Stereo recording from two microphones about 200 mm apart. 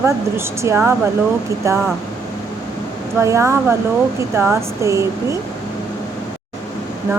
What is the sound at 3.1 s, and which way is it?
Speech, 15° right (ahead or behind).